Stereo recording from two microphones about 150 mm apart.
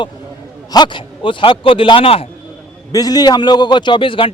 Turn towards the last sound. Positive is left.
turn(degrees=35)  # may be behind; listen again after turning